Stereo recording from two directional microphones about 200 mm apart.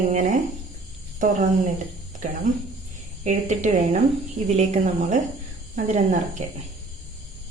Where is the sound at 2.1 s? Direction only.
40° right (ahead or behind).